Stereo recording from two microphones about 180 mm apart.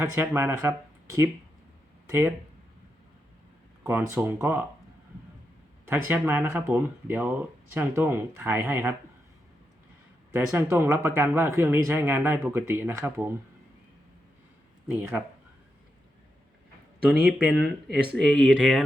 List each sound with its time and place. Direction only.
0.0 s speech: 10° right (ahead or behind)
3.8 s speech: 10° right (ahead or behind)
5.8 s speech: 10° right (ahead or behind)
10.3 s speech: 10° right (ahead or behind)
14.8 s speech: 10° right (ahead or behind)
17.1 s speech: 5° right (ahead or behind)
17.8 s speech: 65° right (ahead or behind)
18.1 s speech: 5° left (ahead or behind)